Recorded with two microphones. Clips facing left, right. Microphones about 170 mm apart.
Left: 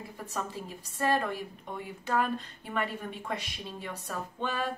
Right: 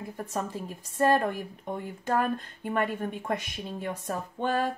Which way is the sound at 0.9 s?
50° right (ahead or behind).